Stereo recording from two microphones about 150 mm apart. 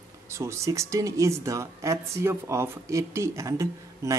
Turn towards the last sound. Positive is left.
turn(degrees=-20)  # may be behind; listen again after turning